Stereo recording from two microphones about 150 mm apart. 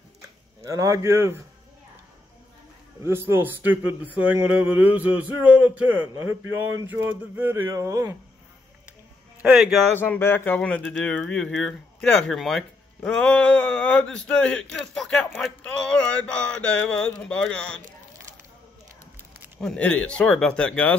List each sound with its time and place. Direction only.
0.6 s speech: 20° right (ahead or behind)
3.0 s speech: 15° right (ahead or behind)
9.4 s a man's voice: 5° right (ahead or behind)
9.9 s speech: 15° left (ahead or behind)
19.6 s speech: 5° left (ahead or behind)